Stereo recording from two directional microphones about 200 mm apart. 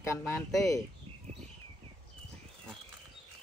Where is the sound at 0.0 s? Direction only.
15° left (ahead or behind).